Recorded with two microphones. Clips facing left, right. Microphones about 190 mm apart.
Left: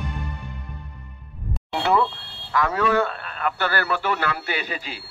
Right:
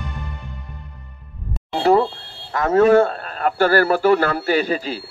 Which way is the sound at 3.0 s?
40° right (ahead or behind).